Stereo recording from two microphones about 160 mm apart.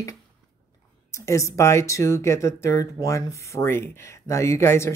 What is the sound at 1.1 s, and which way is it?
Speech, 20° left (ahead or behind).